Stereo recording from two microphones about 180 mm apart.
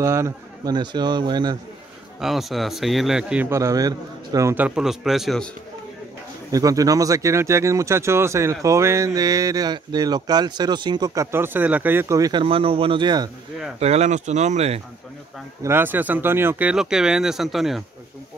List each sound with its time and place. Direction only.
0.0 s speech: 15° right (ahead or behind)
2.1 s speech: centre (ahead or behind)
6.5 s speech: 20° right (ahead or behind)
13.7 s speech: 35° right (ahead or behind)
15.6 s speech: 10° right (ahead or behind)